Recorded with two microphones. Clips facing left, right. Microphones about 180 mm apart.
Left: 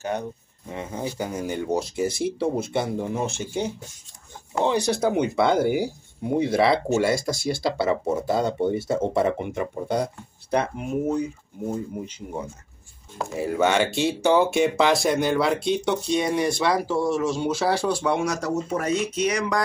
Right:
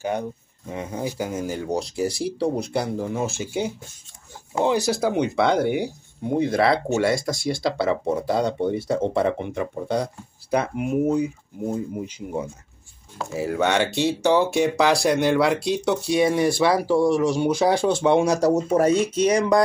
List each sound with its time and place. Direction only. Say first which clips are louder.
0.7 s speech: right 2 dB; 10° right (ahead or behind)
5.0 s speech: left 1 dB; centre (ahead or behind)
10.5 s speech: right 2 dB; 10° right (ahead or behind); by 19.6 s 30° right (ahead or behind)